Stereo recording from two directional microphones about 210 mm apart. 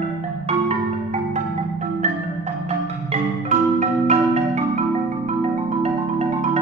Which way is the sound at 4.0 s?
35° right (ahead or behind).